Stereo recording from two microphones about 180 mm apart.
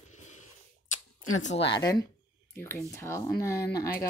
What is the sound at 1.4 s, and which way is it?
Speech, 30° left (ahead or behind).